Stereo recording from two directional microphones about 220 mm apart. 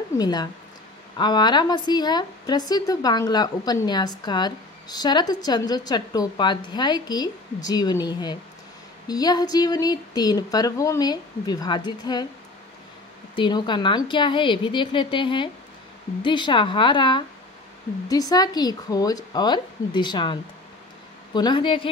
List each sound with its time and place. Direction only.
0.2 s a woman's voice: 20° left (ahead or behind)
13.3 s a woman's voice: 20° left (ahead or behind)